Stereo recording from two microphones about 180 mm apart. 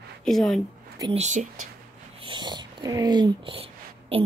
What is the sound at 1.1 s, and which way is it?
Speech, 40° right (ahead or behind).